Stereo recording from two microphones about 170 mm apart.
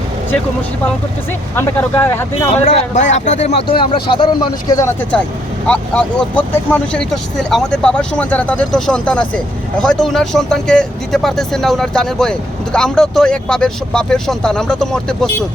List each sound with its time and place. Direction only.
1.5 s speech: 15° left (ahead or behind)
2.5 s speech: 40° left (ahead or behind)
3.5 s speech: 65° left (ahead or behind)
4.1 s speech: 30° left (ahead or behind)
5.6 s speech: 5° left (ahead or behind)